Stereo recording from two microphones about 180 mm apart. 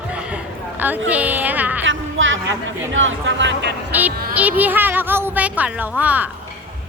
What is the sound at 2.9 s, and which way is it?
Speech, 90° right.